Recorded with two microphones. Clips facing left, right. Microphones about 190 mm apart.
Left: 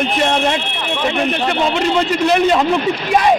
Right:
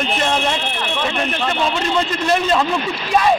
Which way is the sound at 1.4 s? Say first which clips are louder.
Left 3 dB; 20° left (ahead or behind).